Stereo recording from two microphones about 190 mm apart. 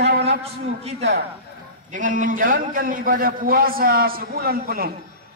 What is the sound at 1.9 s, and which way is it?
A man's voice, 45° right (ahead or behind).